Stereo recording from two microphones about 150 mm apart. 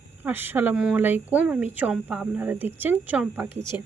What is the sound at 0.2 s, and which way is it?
Speech, 15° right (ahead or behind).